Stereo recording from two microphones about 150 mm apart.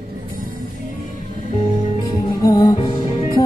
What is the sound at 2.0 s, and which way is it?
Music, 25° left (ahead or behind).